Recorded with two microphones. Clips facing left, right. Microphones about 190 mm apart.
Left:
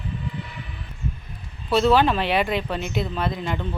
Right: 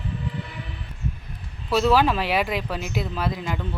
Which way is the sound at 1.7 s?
5° right (ahead or behind).